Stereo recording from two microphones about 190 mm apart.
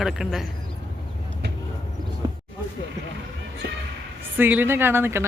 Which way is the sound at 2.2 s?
20° right (ahead or behind).